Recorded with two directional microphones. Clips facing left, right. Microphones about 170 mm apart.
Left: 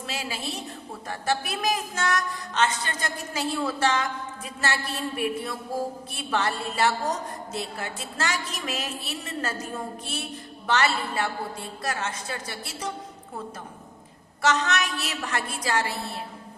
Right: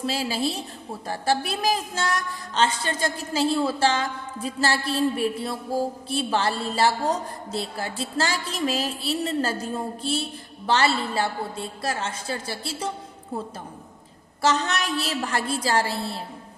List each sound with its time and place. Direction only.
0.0 s a woman's voice: 30° right (ahead or behind)
14.4 s a woman's voice: 30° right (ahead or behind)